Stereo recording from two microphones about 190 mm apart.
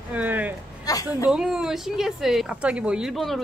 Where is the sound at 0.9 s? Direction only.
20° left (ahead or behind).